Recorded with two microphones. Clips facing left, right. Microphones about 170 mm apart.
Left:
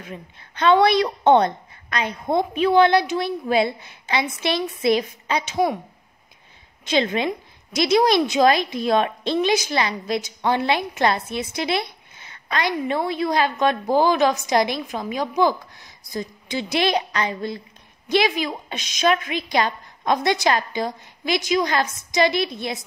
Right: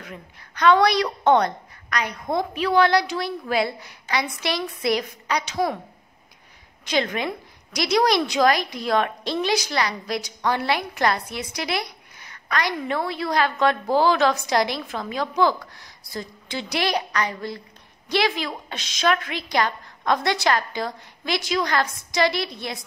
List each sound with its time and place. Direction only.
0.0 s a woman's voice: 25° left (ahead or behind)
6.8 s a woman's voice: 25° left (ahead or behind)